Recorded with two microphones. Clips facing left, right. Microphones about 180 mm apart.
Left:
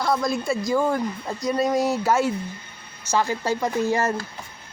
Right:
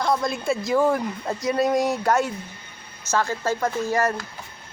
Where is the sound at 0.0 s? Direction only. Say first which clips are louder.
Even; centre (ahead or behind); by 4.1 s 15° left (ahead or behind).